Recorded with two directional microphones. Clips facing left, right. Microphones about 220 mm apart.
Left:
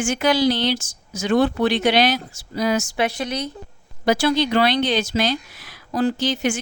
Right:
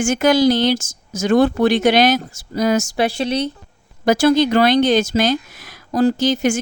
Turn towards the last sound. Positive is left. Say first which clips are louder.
# right 5 dB
turn(degrees=-45)  # may be behind; listen again after turning